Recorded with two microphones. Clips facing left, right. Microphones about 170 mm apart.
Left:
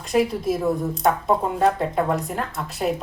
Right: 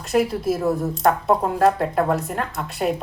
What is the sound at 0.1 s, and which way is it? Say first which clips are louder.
A woman's voice: right 1 dB; centre (ahead or behind).